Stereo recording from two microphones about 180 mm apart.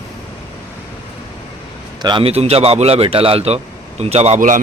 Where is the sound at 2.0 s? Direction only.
30° right (ahead or behind).